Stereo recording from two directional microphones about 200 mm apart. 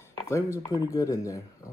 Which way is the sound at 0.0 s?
15° left (ahead or behind).